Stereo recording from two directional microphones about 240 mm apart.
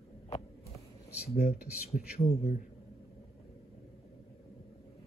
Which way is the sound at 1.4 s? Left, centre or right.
Left.